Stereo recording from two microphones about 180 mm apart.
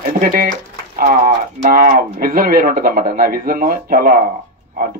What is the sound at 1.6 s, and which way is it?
Speech, 55° right (ahead or behind).